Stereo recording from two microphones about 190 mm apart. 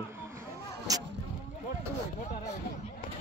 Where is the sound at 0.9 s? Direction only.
20° right (ahead or behind).